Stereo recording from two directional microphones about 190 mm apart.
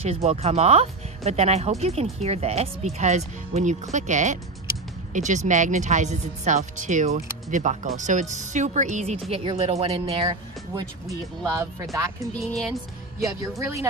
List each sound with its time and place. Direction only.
0.0 s speech: 35° right (ahead or behind)
11.5 s speech: 15° right (ahead or behind)
12.4 s speech: centre (ahead or behind)
13.6 s speech: 15° right (ahead or behind)